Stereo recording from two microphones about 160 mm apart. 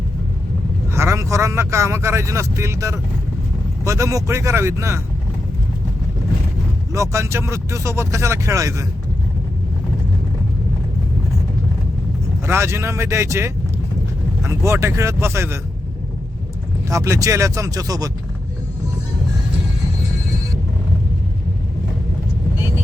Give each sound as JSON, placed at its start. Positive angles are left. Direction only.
{"t": 0.9, "sound": "speech", "side_deg": -15}
{"t": 6.9, "sound": "speech", "side_deg": -20}
{"t": 12.5, "sound": "speech", "side_deg": -15}
{"t": 16.9, "sound": "speech", "side_deg": -20}